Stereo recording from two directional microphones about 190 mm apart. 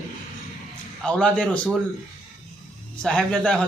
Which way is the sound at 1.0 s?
5° left (ahead or behind).